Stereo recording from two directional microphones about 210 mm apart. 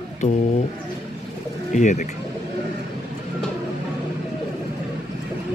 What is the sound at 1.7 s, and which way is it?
Speech, 35° left (ahead or behind).